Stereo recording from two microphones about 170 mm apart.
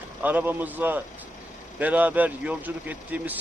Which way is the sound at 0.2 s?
10° right (ahead or behind).